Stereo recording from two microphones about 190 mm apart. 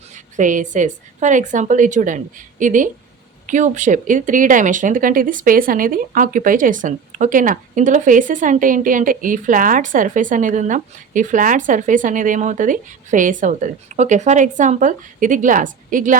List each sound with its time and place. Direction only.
0.1 s a woman's voice: 40° right (ahead or behind)